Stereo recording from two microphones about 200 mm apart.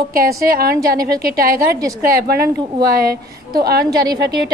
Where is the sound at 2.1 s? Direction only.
50° right (ahead or behind).